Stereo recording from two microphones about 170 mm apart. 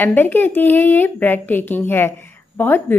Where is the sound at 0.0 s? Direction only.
10° left (ahead or behind).